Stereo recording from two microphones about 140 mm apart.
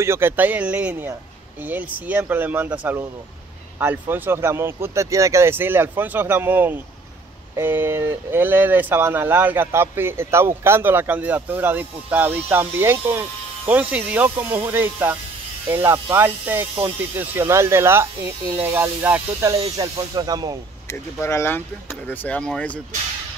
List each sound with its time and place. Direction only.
0.0 s speech: 15° right (ahead or behind)
19.8 s snake: 25° right (ahead or behind)
21.2 s speech: 20° left (ahead or behind)